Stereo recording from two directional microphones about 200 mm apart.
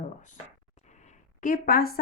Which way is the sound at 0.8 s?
35° left (ahead or behind).